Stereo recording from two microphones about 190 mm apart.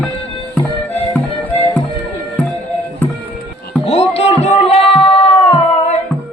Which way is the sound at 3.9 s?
30° left (ahead or behind).